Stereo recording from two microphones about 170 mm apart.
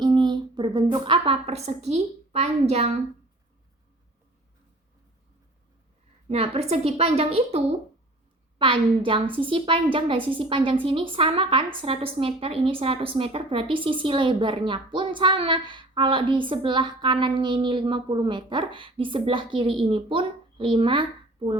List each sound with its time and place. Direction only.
0.0 s a woman's voice: 25° right (ahead or behind)
6.2 s a woman's voice: 35° right (ahead or behind)